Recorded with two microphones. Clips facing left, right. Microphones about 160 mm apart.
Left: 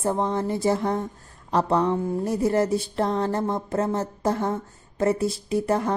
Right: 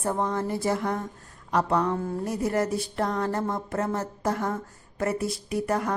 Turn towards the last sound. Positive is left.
turn(degrees=25)  # may be behind; listen again after turning